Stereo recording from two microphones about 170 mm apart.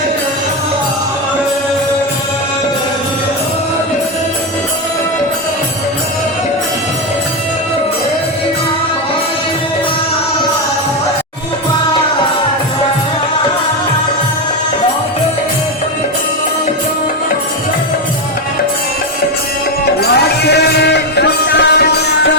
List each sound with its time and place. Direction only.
20.0 s music: 75° left (ahead or behind)